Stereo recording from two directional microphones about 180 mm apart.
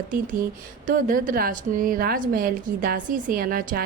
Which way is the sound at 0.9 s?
50° right (ahead or behind).